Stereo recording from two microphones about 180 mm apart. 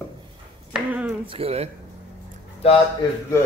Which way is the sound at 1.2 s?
30° right (ahead or behind).